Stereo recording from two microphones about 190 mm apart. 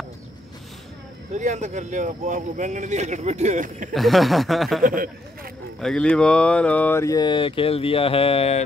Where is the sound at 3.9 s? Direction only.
Centre (ahead or behind).